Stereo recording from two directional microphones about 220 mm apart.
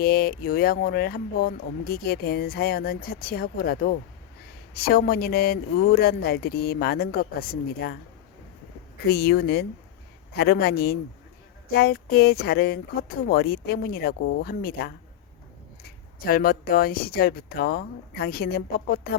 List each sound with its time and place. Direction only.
0.0 s speech: 45° left (ahead or behind)
9.0 s speech: 45° left (ahead or behind)
16.2 s speech: 40° left (ahead or behind)